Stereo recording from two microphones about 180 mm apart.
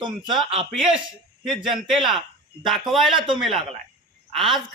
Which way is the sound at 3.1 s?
25° right (ahead or behind).